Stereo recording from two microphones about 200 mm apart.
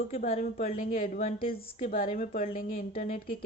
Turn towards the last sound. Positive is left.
turn(degrees=45)  # may be behind; listen again after turning